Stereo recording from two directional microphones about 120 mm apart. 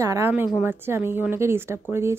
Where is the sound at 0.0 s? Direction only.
25° right (ahead or behind).